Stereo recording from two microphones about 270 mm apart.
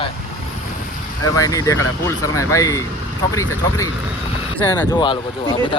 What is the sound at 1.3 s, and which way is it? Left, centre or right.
Speech, centre.